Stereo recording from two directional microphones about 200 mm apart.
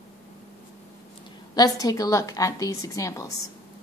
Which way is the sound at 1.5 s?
20° left (ahead or behind).